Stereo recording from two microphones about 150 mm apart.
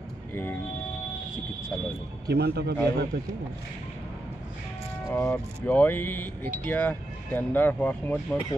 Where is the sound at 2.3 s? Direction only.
90° right.